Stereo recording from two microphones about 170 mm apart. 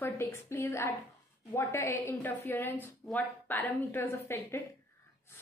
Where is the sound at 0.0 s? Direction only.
15° left (ahead or behind).